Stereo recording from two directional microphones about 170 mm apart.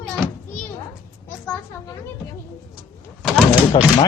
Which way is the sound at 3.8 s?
25° left (ahead or behind).